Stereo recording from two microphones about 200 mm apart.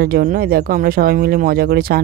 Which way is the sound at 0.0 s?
50° right (ahead or behind).